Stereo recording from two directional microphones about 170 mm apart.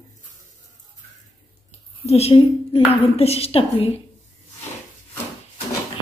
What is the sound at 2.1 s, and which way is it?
A woman's voice, 35° left (ahead or behind).